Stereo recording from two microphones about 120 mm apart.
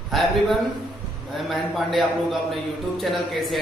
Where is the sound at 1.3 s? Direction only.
Centre (ahead or behind).